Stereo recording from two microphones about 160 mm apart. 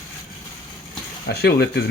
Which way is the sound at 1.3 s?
80° left.